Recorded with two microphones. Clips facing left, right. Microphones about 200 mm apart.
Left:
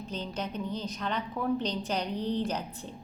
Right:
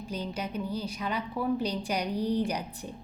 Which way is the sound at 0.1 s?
10° right (ahead or behind).